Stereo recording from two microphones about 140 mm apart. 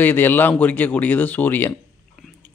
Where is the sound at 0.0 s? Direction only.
15° left (ahead or behind).